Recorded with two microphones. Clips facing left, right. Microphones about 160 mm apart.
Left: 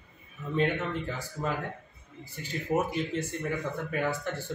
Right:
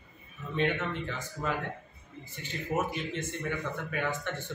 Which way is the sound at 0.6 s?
40° left (ahead or behind).